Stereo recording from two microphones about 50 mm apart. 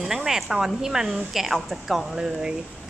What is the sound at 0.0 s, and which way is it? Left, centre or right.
Speech, centre.